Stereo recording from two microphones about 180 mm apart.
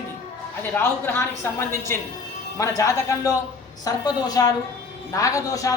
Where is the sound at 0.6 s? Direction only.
10° left (ahead or behind).